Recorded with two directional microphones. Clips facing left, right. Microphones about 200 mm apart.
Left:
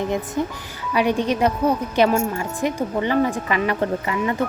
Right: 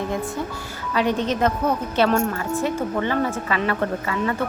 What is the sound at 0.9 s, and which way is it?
Speech, 10° left (ahead or behind).